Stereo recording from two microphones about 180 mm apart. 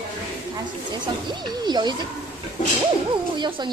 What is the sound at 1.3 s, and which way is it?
Speech, 25° right (ahead or behind).